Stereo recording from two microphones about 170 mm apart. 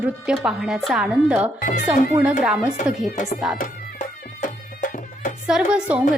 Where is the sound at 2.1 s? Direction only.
5° right (ahead or behind).